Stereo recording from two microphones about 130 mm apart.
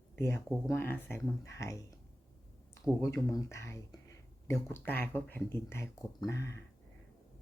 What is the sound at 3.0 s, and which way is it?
Speech, 25° left (ahead or behind).